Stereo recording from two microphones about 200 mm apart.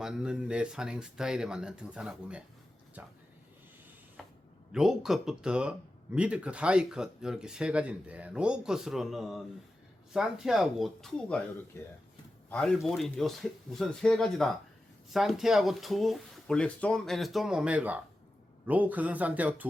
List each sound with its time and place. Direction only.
0.0 s speech: 5° right (ahead or behind)
4.2 s a sound: centre (ahead or behind)
4.7 s speech: centre (ahead or behind)